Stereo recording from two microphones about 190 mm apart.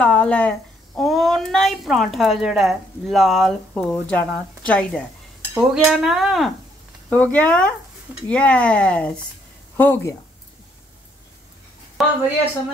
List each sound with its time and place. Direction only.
0.0 s a child's voice: 5° left (ahead or behind)
12.0 s a child's voice: centre (ahead or behind)